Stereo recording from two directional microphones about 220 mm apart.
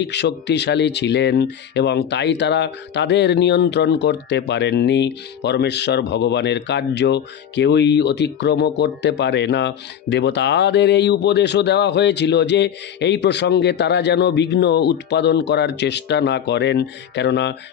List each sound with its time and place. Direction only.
0.0 s speech: 50° left (ahead or behind)